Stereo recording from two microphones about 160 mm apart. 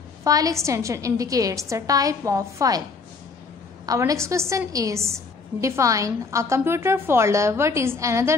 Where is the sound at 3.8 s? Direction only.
20° right (ahead or behind).